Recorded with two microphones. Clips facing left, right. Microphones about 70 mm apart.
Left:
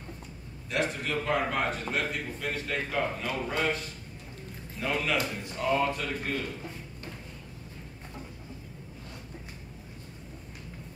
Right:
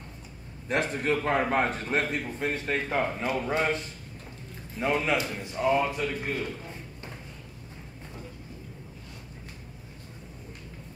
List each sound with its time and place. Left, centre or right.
0.7 s a man's voice: right; by 6.3 s centre